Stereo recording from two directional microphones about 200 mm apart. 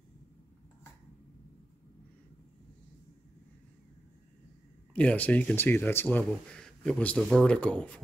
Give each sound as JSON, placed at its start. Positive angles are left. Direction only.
{"t": 4.9, "sound": "speech", "side_deg": 5}